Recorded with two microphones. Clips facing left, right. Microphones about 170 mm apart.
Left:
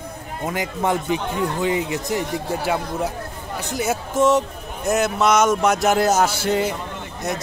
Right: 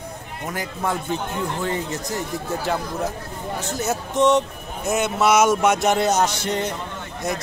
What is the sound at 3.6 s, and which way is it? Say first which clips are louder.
A man's voice: left 3 dB; 10° left (ahead or behind).